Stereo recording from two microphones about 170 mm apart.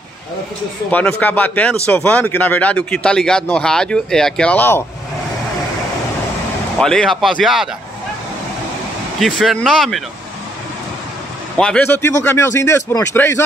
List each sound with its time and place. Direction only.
0.9 s speech: 10° left (ahead or behind)
6.8 s speech: 5° left (ahead or behind)
9.2 s speech: centre (ahead or behind)
11.5 s speech: 5° left (ahead or behind)